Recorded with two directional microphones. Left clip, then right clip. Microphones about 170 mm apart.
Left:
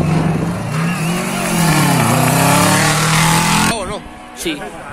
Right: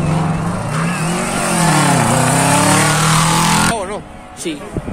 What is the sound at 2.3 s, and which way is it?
Vehicle, 10° left (ahead or behind).